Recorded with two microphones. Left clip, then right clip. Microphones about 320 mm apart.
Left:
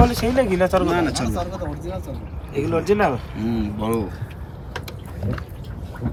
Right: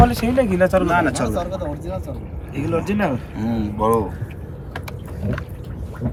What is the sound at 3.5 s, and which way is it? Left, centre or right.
Speech, centre.